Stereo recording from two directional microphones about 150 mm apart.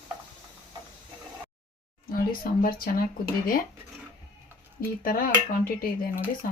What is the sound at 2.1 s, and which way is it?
Speech, 75° left (ahead or behind).